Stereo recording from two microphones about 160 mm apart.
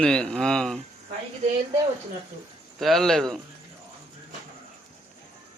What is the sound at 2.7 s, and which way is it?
Speech, centre (ahead or behind).